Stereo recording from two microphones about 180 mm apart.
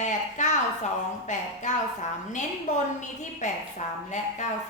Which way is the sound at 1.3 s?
40° left (ahead or behind).